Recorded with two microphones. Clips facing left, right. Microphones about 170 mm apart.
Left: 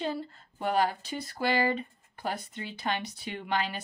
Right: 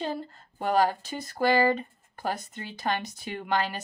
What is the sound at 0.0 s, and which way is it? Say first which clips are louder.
Speech: right 1 dB; 45° right (ahead or behind).